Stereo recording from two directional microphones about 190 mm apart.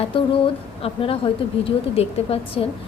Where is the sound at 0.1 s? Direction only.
30° left (ahead or behind).